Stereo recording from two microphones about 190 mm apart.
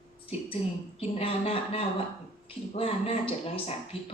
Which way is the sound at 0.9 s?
30° left (ahead or behind).